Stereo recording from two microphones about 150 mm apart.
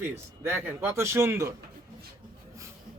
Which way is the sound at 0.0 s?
15° right (ahead or behind).